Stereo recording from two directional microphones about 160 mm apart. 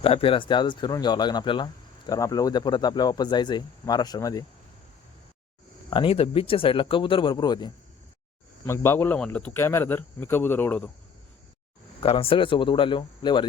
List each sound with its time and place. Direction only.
0.0 s speech: 35° left (ahead or behind)
5.9 s speech: 35° left (ahead or behind)
8.6 s a man's voice: 15° left (ahead or behind)
11.9 s speech: 35° left (ahead or behind)